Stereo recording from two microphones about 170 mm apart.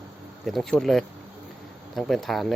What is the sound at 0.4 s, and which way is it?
Speech, centre (ahead or behind).